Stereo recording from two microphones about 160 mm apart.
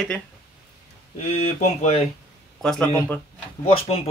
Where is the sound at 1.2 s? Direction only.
40° left (ahead or behind).